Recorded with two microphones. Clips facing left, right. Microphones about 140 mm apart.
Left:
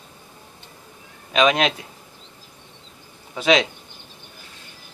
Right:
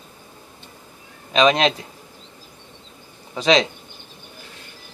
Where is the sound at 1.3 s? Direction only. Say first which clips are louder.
Right 2 dB; 5° left (ahead or behind).